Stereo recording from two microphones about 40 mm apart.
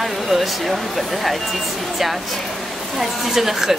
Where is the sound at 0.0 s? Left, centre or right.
Centre.